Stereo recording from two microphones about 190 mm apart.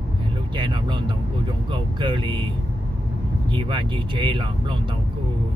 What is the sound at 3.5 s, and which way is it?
Speech, 25° right (ahead or behind).